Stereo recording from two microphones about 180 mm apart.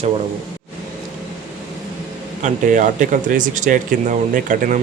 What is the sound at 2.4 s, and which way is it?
Speech, 45° right (ahead or behind).